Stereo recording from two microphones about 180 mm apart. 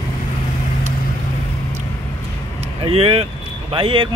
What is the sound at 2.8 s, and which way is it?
Speech, 35° right (ahead or behind).